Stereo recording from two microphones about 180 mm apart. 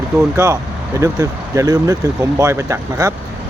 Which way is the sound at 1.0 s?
15° right (ahead or behind).